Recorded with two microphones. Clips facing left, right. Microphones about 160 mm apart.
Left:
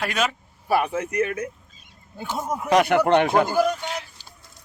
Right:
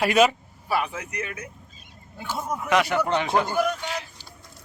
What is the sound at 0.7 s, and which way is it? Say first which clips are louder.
Speech: left 5 dB; 50° left (ahead or behind).